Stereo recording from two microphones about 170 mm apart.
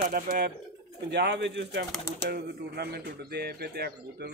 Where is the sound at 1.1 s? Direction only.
90° right.